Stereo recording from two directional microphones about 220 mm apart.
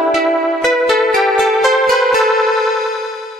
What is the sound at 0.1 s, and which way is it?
Music, centre (ahead or behind).